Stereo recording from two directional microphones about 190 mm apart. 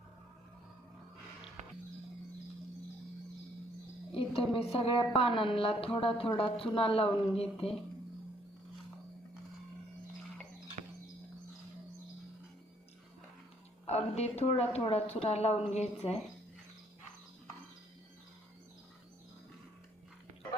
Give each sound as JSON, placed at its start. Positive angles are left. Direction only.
{"t": 4.6, "sound": "a woman's voice", "side_deg": 30}
{"t": 7.4, "sound": "speech", "side_deg": 0}
{"t": 13.8, "sound": "a woman's voice", "side_deg": 35}